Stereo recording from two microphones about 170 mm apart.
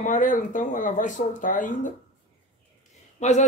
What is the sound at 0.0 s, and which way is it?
Speech, 50° left (ahead or behind).